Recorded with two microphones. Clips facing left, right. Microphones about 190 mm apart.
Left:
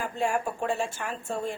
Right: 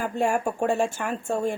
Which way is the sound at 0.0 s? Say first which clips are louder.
Right 4 dB; 45° right (ahead or behind).